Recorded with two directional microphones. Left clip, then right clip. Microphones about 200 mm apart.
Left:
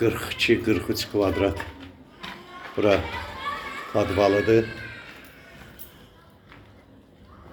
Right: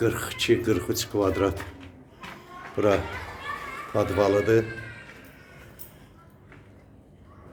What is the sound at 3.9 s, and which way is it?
Speech, 15° right (ahead or behind).